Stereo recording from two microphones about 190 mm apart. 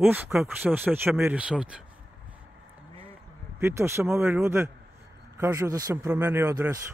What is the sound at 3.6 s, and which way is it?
Speech, 15° right (ahead or behind).